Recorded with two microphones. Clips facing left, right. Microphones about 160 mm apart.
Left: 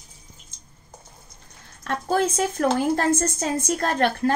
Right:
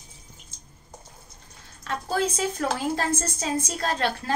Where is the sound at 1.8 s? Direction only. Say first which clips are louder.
Left 4 dB; 50° left (ahead or behind).